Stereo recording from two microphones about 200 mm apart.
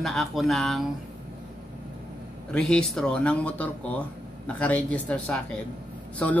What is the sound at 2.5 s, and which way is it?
Speech, 5° left (ahead or behind).